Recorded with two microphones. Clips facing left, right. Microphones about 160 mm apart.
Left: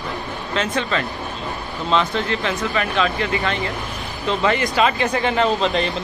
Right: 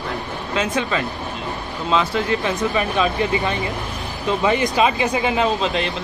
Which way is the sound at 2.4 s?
20° right (ahead or behind).